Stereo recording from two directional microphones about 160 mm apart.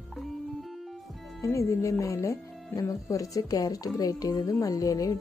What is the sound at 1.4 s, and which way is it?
Speech, 20° left (ahead or behind).